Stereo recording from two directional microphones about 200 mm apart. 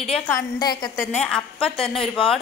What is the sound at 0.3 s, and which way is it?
Speech, 20° left (ahead or behind).